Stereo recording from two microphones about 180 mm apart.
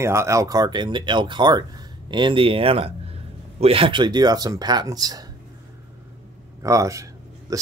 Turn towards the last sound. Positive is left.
turn(degrees=-20)  # may be behind; listen again after turning